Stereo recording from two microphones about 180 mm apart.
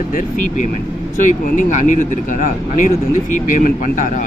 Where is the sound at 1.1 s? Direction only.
45° left (ahead or behind).